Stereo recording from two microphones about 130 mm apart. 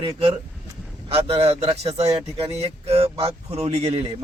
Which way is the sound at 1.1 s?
45° right (ahead or behind).